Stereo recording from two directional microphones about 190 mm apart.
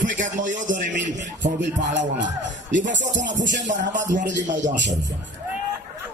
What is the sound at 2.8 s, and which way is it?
Music, 70° right (ahead or behind).